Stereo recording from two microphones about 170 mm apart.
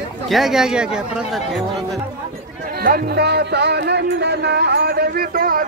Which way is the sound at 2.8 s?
65° right (ahead or behind).